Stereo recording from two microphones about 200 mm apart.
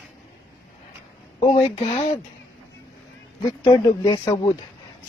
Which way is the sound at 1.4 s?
30° left (ahead or behind).